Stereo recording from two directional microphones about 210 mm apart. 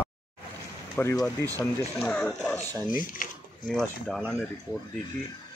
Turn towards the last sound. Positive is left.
turn(degrees=0)  # may be behind; listen again after turning